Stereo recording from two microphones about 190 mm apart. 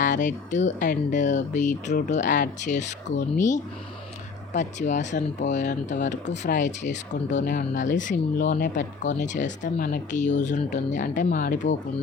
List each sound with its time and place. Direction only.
0.0 s speech: 40° left (ahead or behind)